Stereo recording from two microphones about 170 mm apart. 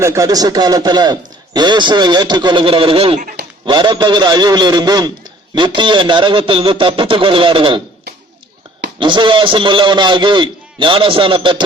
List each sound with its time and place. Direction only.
0.0 s a man's voice: 20° right (ahead or behind)
9.0 s a man's voice: 30° right (ahead or behind)